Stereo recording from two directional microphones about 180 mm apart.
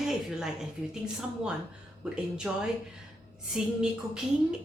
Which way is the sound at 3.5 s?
5° right (ahead or behind).